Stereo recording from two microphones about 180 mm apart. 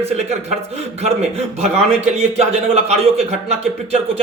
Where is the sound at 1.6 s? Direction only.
35° right (ahead or behind).